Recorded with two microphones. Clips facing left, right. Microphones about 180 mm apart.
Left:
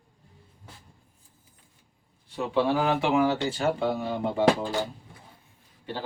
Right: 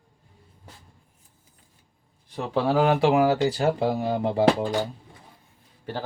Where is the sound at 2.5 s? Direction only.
35° right (ahead or behind).